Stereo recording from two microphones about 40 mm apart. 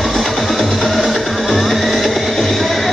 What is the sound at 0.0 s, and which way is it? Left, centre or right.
Music, centre.